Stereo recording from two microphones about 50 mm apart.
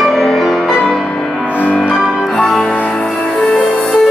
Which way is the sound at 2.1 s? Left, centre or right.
Centre.